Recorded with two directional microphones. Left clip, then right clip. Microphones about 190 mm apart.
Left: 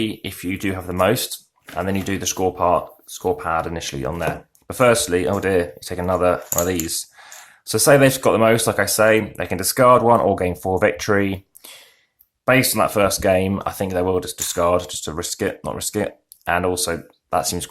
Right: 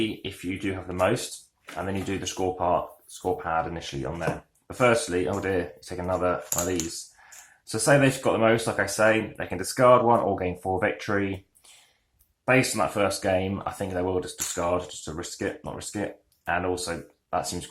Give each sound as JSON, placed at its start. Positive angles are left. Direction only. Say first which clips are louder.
{"t": 0.2, "sound": "speech", "louder": "left 6 dB", "side_deg": 40}
{"t": 12.5, "sound": "speech", "louder": "left 6 dB", "side_deg": 35}